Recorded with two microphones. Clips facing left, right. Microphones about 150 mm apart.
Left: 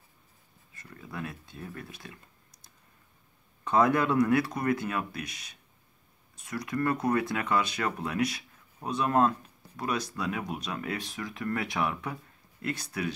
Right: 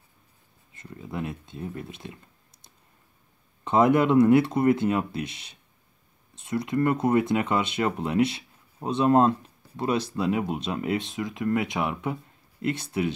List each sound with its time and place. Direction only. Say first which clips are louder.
0.7 s speech: right 6 dB; 20° right (ahead or behind)